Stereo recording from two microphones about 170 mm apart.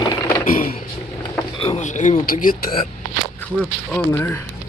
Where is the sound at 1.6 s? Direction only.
40° left (ahead or behind).